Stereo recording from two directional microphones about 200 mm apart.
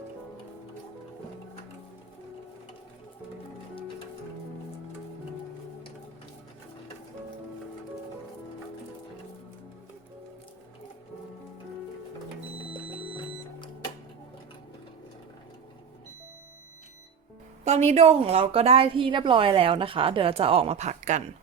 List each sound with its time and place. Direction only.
17.7 s a woman's voice: 35° right (ahead or behind)